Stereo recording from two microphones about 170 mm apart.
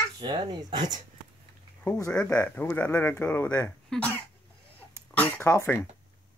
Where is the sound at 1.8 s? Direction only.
20° left (ahead or behind).